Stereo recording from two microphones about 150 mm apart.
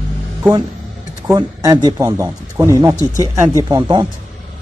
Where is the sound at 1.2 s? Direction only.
25° right (ahead or behind).